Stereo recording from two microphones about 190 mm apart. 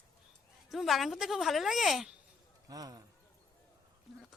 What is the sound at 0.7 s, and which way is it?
Speech, centre (ahead or behind).